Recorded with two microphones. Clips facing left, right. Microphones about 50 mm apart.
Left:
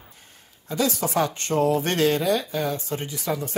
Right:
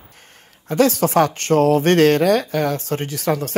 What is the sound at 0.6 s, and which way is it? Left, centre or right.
Speech, right.